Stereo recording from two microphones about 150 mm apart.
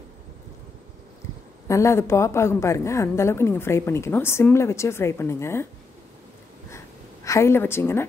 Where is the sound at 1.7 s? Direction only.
20° left (ahead or behind).